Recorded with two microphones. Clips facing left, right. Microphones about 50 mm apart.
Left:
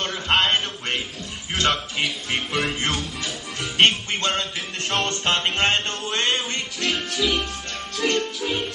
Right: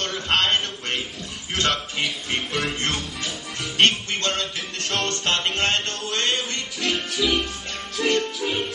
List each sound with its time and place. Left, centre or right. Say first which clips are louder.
0.0 s music: left 1 dB; centre
6.8 s music: even; centre